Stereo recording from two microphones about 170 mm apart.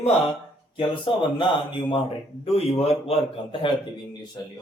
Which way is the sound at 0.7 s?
30° left (ahead or behind).